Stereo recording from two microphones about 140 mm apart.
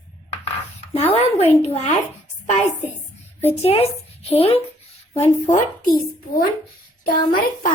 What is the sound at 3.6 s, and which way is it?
A woman's voice, 45° left (ahead or behind).